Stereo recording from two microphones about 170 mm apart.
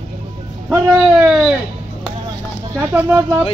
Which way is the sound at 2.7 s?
15° right (ahead or behind).